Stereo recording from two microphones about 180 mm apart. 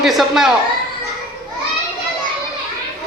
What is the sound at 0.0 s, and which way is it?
Speech, centre (ahead or behind).